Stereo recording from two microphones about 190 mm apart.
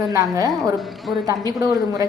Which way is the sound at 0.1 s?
15° right (ahead or behind).